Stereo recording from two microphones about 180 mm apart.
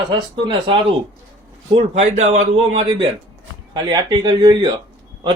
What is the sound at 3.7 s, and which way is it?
Speech, 25° right (ahead or behind).